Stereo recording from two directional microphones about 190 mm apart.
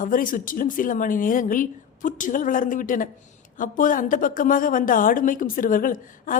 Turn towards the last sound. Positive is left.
turn(degrees=45)  # may be behind; listen again after turning